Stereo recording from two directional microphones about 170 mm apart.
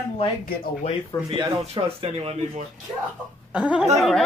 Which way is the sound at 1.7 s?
35° right (ahead or behind).